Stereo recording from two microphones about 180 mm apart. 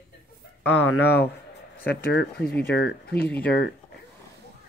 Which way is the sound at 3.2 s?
10° left (ahead or behind).